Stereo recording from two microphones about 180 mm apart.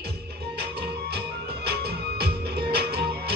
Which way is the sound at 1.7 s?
60° right (ahead or behind).